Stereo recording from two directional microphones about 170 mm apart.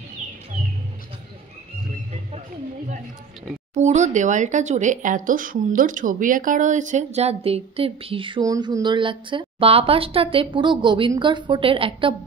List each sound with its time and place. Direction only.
3.7 s speech: 45° right (ahead or behind)